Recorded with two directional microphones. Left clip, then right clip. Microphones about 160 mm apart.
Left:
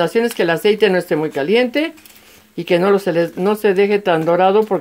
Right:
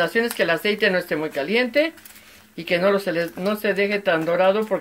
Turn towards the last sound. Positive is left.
turn(degrees=50)  # may be behind; listen again after turning